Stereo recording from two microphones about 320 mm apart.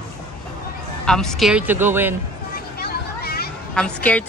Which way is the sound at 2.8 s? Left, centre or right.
Left.